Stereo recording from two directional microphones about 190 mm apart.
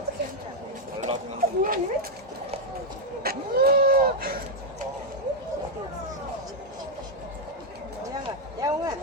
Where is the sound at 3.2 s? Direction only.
55° right (ahead or behind).